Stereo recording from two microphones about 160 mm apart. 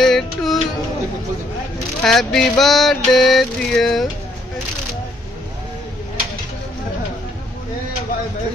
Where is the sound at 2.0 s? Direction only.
Centre (ahead or behind).